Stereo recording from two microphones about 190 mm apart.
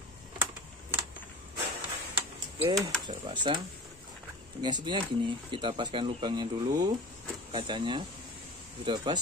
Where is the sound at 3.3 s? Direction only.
25° right (ahead or behind).